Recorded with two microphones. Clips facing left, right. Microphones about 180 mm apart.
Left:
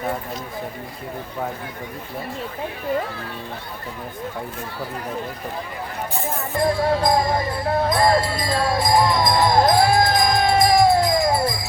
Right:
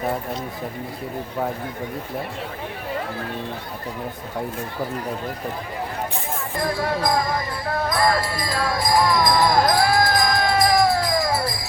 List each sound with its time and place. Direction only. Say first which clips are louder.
6.6 s speech: left 4 dB; 25° left (ahead or behind)